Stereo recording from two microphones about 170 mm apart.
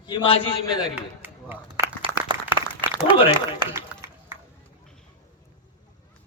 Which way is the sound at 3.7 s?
15° right (ahead or behind).